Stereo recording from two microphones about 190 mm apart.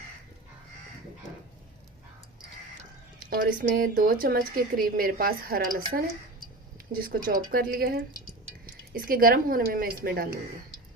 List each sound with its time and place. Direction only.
3.2 s speech: 50° right (ahead or behind)